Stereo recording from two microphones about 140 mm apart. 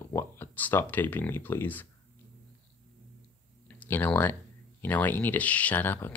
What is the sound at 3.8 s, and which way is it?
Speech, 15° left (ahead or behind).